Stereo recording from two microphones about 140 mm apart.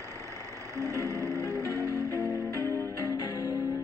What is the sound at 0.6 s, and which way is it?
Music, 20° right (ahead or behind).